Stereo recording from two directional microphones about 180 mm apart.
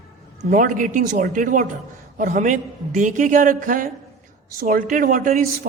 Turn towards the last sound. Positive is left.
turn(degrees=-50)  # may be behind; listen again after turning